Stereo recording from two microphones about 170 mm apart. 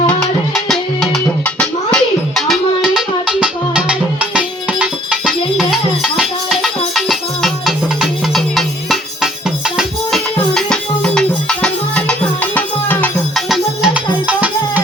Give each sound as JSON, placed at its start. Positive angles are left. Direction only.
{"t": 0.1, "sound": "music", "side_deg": 5}
{"t": 13.5, "sound": "music", "side_deg": -5}